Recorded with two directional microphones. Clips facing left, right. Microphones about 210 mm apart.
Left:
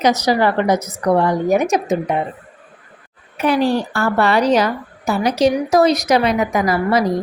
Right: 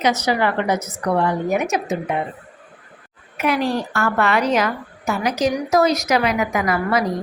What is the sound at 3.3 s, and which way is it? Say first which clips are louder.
A woman's voice: left 4 dB; 30° left (ahead or behind).